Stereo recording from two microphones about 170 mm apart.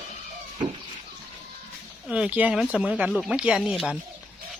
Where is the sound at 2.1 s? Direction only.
5° right (ahead or behind).